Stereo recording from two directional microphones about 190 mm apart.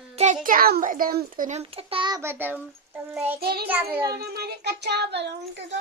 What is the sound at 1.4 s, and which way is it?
Speech, 35° right (ahead or behind).